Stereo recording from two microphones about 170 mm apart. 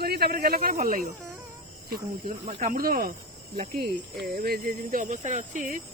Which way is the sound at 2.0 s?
30° right (ahead or behind).